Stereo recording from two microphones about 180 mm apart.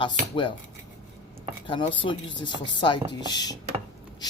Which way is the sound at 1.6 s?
30° left (ahead or behind).